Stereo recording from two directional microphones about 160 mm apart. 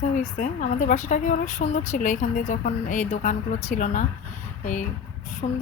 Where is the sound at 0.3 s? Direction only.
55° left (ahead or behind).